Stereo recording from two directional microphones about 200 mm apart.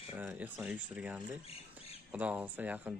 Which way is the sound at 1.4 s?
30° left (ahead or behind).